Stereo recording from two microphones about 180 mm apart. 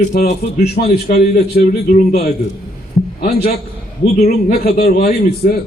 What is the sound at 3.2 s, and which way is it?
Speech, 60° left (ahead or behind).